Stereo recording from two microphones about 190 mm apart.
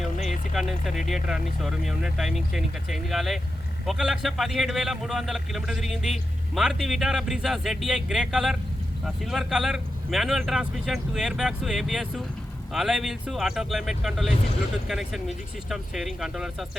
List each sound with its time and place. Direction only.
0.0 s a man's voice: centre (ahead or behind)